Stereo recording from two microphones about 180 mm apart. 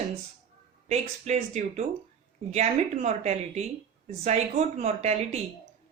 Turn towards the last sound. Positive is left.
turn(degrees=-35)  # may be behind; listen again after turning